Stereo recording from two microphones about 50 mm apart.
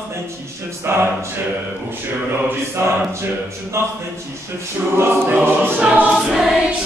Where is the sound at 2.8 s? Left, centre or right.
Right.